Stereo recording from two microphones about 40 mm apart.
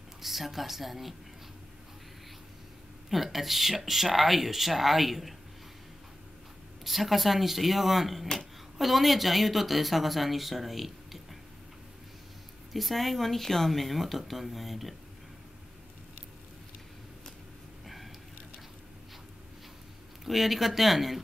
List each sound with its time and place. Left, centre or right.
0.2 s speech: centre
3.1 s speech: centre
6.8 s speech: centre
12.7 s speech: centre
17.8 s a sound: centre
20.2 s speech: centre